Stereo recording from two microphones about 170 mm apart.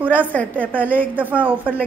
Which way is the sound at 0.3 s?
10° left (ahead or behind).